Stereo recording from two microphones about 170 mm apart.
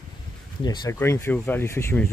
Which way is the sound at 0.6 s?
25° left (ahead or behind).